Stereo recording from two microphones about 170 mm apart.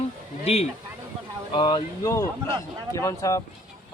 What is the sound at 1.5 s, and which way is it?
Speech, 25° left (ahead or behind).